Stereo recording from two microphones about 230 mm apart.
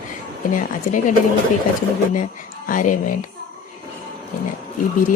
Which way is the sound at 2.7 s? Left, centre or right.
Left.